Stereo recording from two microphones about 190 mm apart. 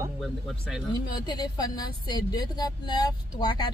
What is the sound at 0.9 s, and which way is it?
Speech, 20° left (ahead or behind).